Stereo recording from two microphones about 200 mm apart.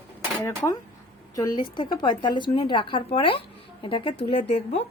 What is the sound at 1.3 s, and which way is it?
A woman's voice, 20° left (ahead or behind).